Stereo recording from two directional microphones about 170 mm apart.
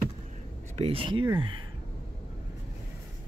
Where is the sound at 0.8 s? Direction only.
35° right (ahead or behind).